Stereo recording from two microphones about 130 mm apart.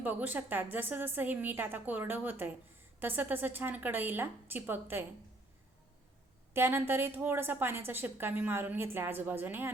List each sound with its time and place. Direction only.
0.0 s a woman's voice: 15° right (ahead or behind)
6.5 s a woman's voice: 15° right (ahead or behind)